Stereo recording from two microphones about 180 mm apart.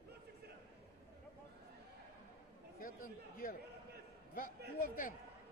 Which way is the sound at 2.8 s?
50° left (ahead or behind).